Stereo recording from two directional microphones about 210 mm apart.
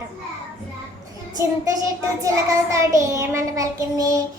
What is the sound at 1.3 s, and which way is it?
A child's voice, 15° right (ahead or behind).